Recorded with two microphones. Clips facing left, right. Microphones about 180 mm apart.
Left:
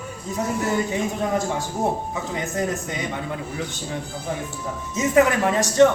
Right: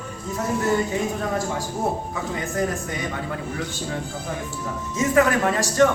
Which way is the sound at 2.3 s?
20° left (ahead or behind).